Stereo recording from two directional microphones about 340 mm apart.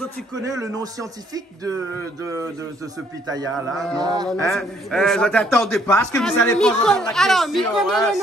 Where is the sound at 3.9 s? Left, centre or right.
Centre.